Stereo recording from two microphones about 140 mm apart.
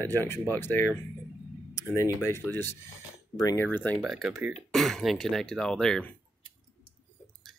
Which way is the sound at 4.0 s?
5° right (ahead or behind).